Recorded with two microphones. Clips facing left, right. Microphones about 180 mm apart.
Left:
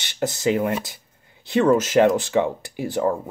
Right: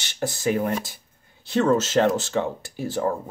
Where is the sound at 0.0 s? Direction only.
20° left (ahead or behind).